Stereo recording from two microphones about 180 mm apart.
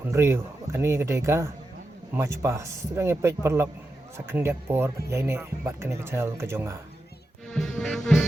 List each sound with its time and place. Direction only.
0.1 s speech: 15° right (ahead or behind)
7.5 s music: 5° left (ahead or behind)